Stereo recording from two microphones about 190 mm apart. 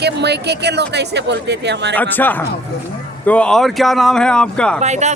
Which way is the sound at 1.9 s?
10° left (ahead or behind).